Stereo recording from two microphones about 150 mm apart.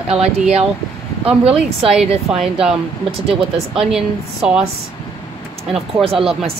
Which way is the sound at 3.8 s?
5° right (ahead or behind).